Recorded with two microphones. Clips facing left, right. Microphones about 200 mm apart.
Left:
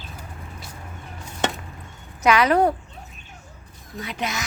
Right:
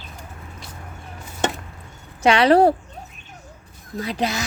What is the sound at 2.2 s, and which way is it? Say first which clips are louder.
Speech: right 4 dB; 30° right (ahead or behind).